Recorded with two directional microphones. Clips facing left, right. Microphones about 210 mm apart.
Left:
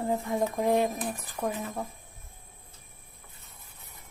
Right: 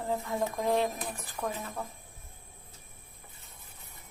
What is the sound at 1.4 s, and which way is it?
Speech, 25° left (ahead or behind).